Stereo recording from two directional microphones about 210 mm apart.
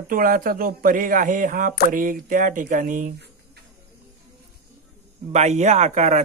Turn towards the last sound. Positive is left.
turn(degrees=-35)  # may be behind; listen again after turning